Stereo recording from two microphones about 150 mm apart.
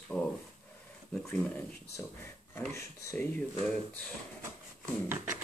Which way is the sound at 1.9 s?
15° left (ahead or behind).